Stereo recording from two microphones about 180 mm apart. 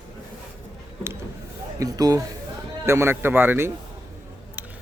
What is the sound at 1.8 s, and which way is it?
Speech, 20° right (ahead or behind).